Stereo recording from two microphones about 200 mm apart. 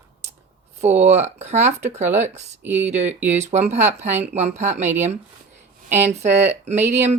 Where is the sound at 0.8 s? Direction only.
35° right (ahead or behind).